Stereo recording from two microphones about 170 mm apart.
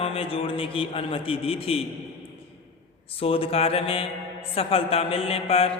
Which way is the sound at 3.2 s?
35° left (ahead or behind).